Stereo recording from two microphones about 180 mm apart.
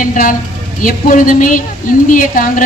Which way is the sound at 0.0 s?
45° left (ahead or behind).